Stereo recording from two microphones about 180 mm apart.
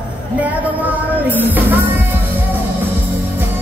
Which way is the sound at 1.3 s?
10° right (ahead or behind).